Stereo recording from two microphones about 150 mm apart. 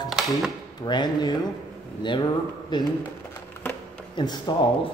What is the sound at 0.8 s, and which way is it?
Speech, 30° left (ahead or behind).